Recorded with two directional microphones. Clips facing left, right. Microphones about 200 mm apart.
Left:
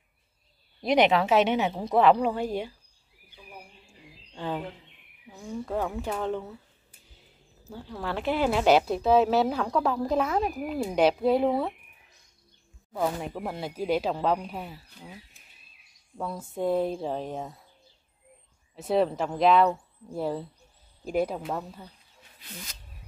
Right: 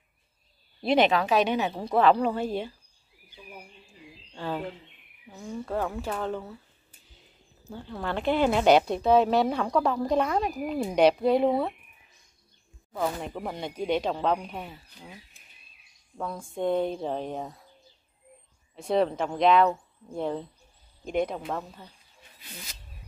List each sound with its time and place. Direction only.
0.8 s speech: 20° left (ahead or behind)
4.4 s speech: 15° left (ahead or behind)
5.3 s a woman's voice: centre (ahead or behind)
5.7 s speech: 10° left (ahead or behind)
7.6 s a woman's voice: 5° left (ahead or behind)
12.9 s a woman's voice: 5° left (ahead or behind)
16.2 s a woman's voice: 5° left (ahead or behind)
18.8 s a woman's voice: 5° left (ahead or behind)